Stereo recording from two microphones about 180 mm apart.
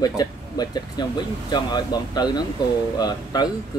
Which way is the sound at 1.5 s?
25° left (ahead or behind).